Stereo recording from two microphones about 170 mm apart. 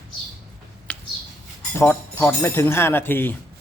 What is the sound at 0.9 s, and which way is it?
Bird, 10° left (ahead or behind).